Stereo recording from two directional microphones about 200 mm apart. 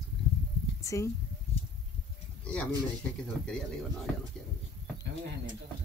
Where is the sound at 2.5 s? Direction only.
5° left (ahead or behind).